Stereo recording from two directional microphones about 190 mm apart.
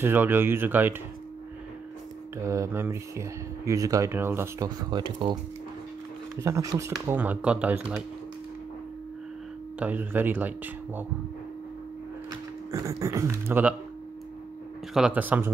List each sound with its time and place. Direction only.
0.0 s speech: 10° right (ahead or behind)
2.3 s speech: 15° right (ahead or behind)
6.4 s speech: 15° right (ahead or behind)
9.8 s speech: 10° right (ahead or behind)
12.7 s speech: 15° right (ahead or behind)
15.0 s speech: 5° right (ahead or behind)